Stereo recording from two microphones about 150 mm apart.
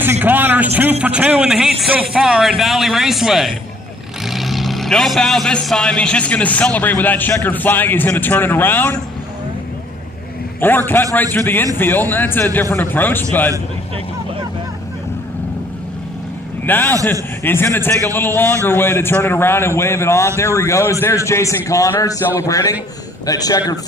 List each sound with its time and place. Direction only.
0.0 s a sound: 15° right (ahead or behind)
0.7 s speech: 10° right (ahead or behind); by 9.0 s 10° left (ahead or behind)
10.6 s speech: 15° left (ahead or behind)
16.6 s a man's voice: 15° left (ahead or behind)